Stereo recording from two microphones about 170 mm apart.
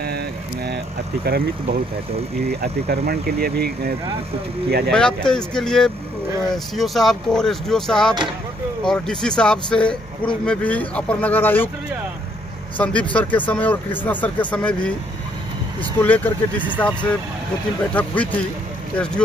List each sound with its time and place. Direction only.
1.2 s speech: 70° right (ahead or behind)
4.6 s speech: 75° right (ahead or behind)
4.9 s speech: 5° left (ahead or behind)
12.7 s speech: 10° left (ahead or behind)
16.0 s speech: 10° left (ahead or behind)